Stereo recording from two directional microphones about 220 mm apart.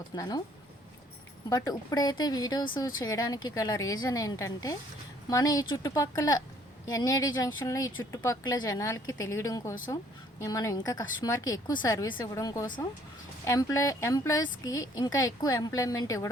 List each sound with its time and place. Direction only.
0.1 s speech: 15° left (ahead or behind)
1.5 s speech: 15° left (ahead or behind)